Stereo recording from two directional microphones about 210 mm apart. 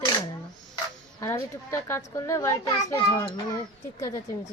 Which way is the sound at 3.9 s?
15° left (ahead or behind).